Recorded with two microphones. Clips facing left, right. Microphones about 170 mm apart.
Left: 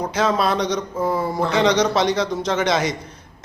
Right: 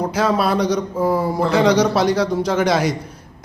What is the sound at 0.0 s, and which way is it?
Speech, 5° right (ahead or behind).